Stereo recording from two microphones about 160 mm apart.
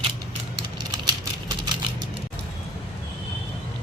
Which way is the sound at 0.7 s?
25° right (ahead or behind).